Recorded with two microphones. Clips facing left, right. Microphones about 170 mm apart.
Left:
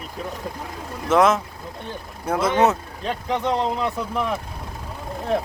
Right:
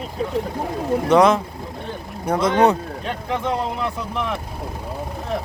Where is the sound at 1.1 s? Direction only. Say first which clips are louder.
Right 2 dB; centre (ahead or behind).